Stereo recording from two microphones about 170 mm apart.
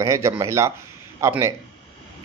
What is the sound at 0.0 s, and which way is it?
Speech, 15° right (ahead or behind).